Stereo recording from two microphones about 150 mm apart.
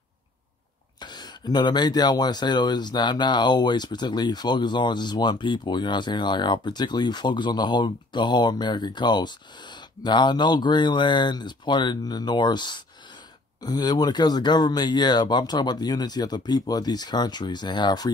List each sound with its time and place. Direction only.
1.0 s speech: 25° left (ahead or behind)